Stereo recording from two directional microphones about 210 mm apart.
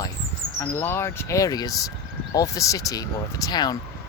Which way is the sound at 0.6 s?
10° left (ahead or behind).